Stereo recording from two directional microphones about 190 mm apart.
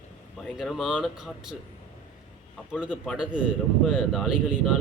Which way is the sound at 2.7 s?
5° right (ahead or behind).